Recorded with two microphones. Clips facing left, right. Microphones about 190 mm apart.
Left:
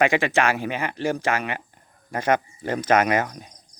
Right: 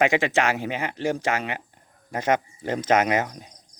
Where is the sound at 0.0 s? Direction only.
20° right (ahead or behind).